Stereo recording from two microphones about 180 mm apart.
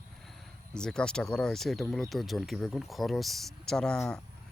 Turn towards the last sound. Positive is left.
turn(degrees=5)  # may be behind; listen again after turning